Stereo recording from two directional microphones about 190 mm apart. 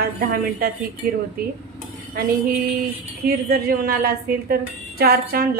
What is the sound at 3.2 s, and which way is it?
A woman's voice, 55° right (ahead or behind).